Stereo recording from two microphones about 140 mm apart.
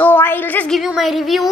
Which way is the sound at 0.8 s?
Centre (ahead or behind).